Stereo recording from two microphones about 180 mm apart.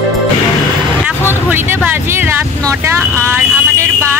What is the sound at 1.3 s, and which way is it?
Vehicle, 10° right (ahead or behind).